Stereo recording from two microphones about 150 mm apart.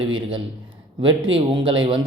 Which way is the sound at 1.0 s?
35° right (ahead or behind).